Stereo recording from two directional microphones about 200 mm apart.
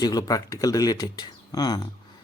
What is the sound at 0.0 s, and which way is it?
Speech, 20° left (ahead or behind).